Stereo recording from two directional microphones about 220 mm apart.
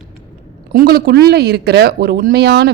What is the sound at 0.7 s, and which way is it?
A woman's voice, 45° right (ahead or behind).